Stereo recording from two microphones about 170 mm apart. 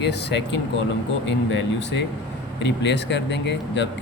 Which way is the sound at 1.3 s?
90° left.